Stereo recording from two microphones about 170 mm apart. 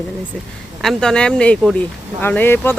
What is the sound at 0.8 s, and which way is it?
Speech, 5° left (ahead or behind).